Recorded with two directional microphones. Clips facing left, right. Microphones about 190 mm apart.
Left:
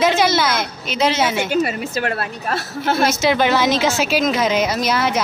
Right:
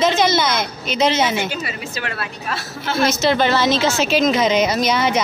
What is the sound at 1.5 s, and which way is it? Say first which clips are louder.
A woman's voice: left 8 dB; 50° left (ahead or behind).